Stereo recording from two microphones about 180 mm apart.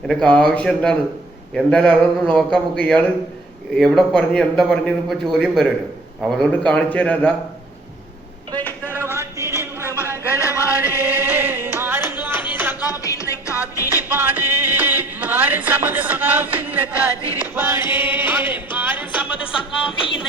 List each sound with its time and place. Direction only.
0.1 s a man's voice: 5° left (ahead or behind)
8.5 s vehicle: 10° left (ahead or behind)
9.0 s a sound: 15° right (ahead or behind)
9.9 s a sound: 15° left (ahead or behind)
10.8 s music: 10° right (ahead or behind)
12.9 s music: 20° left (ahead or behind)
13.9 s music: 10° right (ahead or behind)